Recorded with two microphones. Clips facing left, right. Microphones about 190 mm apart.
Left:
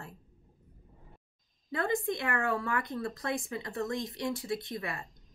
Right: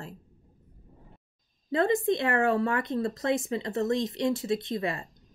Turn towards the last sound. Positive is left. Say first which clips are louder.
# right 7 dB
turn(degrees=-25)  # may be behind; listen again after turning